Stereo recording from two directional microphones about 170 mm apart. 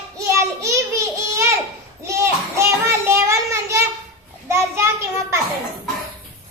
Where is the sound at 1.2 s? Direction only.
15° right (ahead or behind).